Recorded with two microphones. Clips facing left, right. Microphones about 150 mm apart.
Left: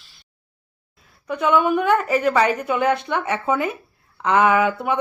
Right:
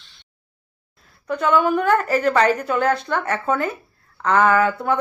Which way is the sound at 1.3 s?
5° left (ahead or behind).